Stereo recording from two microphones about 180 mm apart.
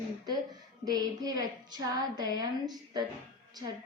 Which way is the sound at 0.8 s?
20° right (ahead or behind).